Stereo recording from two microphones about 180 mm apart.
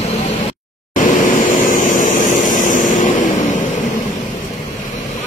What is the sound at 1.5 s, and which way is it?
Vehicle, 45° left (ahead or behind).